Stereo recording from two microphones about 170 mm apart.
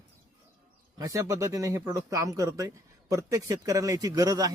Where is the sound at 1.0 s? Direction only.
20° right (ahead or behind).